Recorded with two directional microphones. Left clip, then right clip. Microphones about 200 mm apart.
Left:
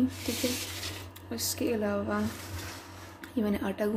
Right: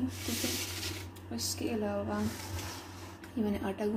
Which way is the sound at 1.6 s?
30° left (ahead or behind).